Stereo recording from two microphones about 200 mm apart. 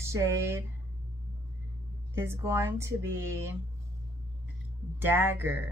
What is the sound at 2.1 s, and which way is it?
Speech, 10° right (ahead or behind).